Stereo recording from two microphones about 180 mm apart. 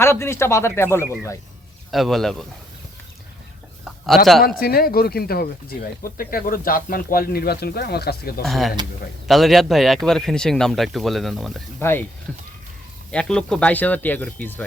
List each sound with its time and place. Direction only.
0.0 s speech: 15° left (ahead or behind)
1.9 s speech: centre (ahead or behind)
3.8 s a sound: centre (ahead or behind)
4.4 s speech: 55° left (ahead or behind)
8.4 s speech: centre (ahead or behind)
11.8 s speech: 15° left (ahead or behind)
13.1 s speech: 5° left (ahead or behind)